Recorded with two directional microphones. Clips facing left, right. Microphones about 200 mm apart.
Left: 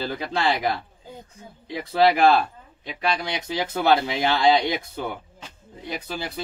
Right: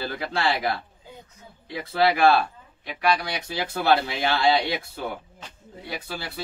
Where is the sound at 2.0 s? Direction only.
15° left (ahead or behind).